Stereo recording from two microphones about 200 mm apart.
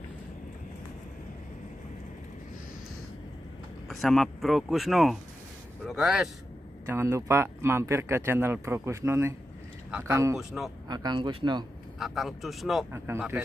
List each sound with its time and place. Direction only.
3.9 s speech: centre (ahead or behind)
6.9 s speech: 15° right (ahead or behind)
10.3 s speech: centre (ahead or behind)
10.9 s speech: 20° right (ahead or behind)
12.0 s speech: centre (ahead or behind)
12.9 s speech: 10° right (ahead or behind)